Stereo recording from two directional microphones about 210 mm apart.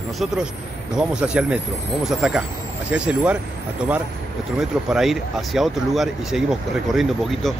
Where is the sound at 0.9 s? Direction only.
5° right (ahead or behind).